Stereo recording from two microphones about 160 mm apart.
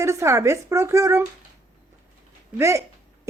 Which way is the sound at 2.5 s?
15° right (ahead or behind).